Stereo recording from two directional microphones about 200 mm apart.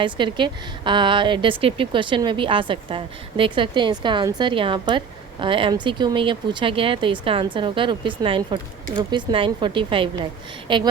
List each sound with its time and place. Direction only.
0.0 s a woman's voice: 25° right (ahead or behind)